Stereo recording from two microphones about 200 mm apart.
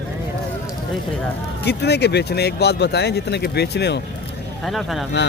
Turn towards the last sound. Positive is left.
turn(degrees=0)  # may be behind; listen again after turning